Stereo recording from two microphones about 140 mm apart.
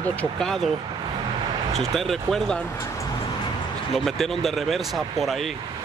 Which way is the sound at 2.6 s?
20° left (ahead or behind).